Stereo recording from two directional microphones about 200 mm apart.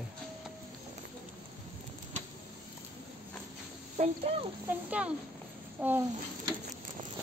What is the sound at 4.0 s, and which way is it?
Speech, 30° right (ahead or behind).